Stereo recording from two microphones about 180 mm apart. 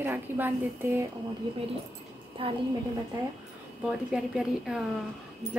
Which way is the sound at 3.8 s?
5° right (ahead or behind).